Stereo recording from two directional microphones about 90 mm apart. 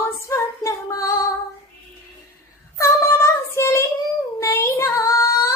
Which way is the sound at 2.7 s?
30° left (ahead or behind).